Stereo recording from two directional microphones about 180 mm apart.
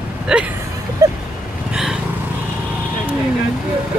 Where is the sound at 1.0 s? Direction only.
15° right (ahead or behind).